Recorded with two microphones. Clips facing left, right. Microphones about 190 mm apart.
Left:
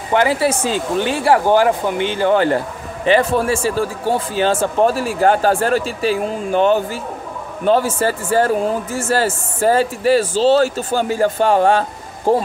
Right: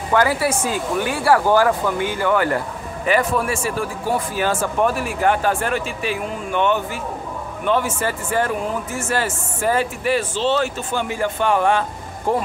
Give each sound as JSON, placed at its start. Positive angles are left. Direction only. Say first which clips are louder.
{"t": 0.1, "sound": "speech", "louder": "left 3 dB", "side_deg": 25}